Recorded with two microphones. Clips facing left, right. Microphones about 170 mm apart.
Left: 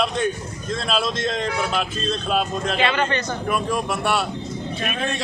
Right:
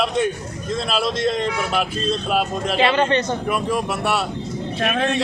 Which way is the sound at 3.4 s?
5° right (ahead or behind).